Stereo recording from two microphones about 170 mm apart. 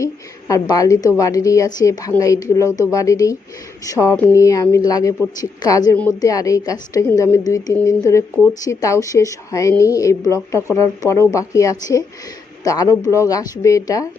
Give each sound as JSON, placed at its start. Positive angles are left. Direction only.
{"t": 0.0, "sound": "a woman's voice", "side_deg": 20}